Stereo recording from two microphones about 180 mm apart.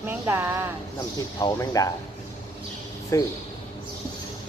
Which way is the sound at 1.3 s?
20° left (ahead or behind).